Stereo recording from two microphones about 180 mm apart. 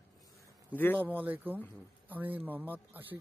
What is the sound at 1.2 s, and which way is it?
Speech, 10° right (ahead or behind).